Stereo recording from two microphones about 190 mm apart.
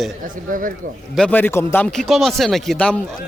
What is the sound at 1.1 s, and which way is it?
A man's voice, 5° left (ahead or behind).